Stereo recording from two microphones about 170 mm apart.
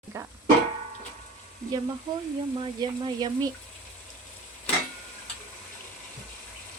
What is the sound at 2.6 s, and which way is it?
Speech, 25° right (ahead or behind).